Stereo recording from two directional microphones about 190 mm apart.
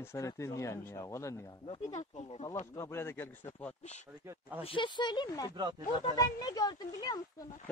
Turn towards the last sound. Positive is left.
turn(degrees=20)  # may be behind; listen again after turning